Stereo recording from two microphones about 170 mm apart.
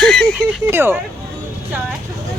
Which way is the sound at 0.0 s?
5° left (ahead or behind).